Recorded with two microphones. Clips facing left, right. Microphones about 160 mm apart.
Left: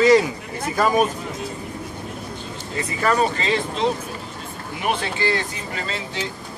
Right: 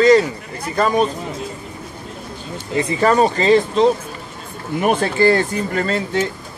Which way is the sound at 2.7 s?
30° right (ahead or behind).